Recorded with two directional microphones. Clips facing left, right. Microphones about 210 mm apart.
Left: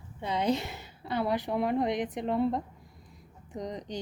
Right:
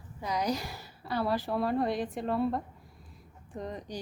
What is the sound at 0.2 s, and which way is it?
A woman's voice, 25° left (ahead or behind).